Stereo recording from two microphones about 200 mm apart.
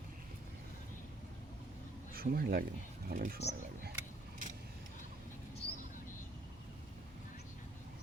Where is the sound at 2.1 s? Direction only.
50° right (ahead or behind).